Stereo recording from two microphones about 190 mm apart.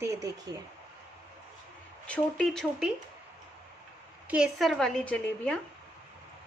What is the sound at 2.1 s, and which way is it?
Speech, 5° left (ahead or behind).